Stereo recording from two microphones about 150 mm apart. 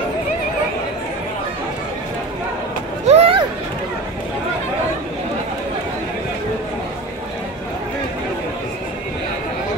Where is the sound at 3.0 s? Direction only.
40° right (ahead or behind).